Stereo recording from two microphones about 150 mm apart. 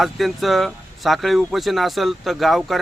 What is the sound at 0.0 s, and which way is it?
Speech, centre (ahead or behind).